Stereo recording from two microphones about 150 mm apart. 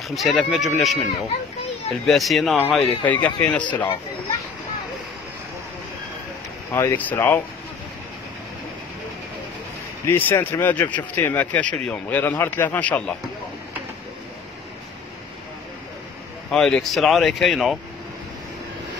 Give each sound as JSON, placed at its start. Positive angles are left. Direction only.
{"t": 0.1, "sound": "speech", "side_deg": 0}
{"t": 2.0, "sound": "speech", "side_deg": 0}
{"t": 3.6, "sound": "speech", "side_deg": 30}
{"t": 6.7, "sound": "speech", "side_deg": 15}
{"t": 10.0, "sound": "speech", "side_deg": 15}
{"t": 16.4, "sound": "speech", "side_deg": 5}